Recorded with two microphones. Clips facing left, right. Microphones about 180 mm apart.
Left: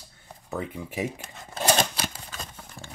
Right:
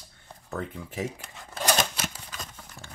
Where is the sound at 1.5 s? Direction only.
30° left (ahead or behind).